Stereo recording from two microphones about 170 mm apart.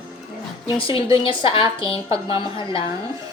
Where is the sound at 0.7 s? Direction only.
30° left (ahead or behind).